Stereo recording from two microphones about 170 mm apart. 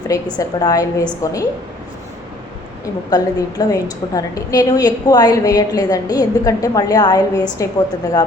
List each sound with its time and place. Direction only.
0.1 s a woman's voice: 25° left (ahead or behind)
3.1 s a woman's voice: 20° left (ahead or behind)